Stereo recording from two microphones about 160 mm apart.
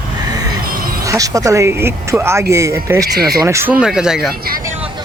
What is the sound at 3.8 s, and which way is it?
Speech, 5° right (ahead or behind).